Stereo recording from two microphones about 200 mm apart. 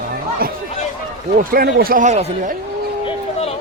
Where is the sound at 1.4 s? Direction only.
45° right (ahead or behind).